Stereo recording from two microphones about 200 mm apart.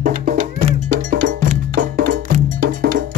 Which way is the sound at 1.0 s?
40° right (ahead or behind).